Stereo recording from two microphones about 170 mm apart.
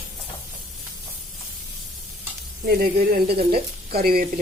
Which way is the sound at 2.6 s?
55° right (ahead or behind).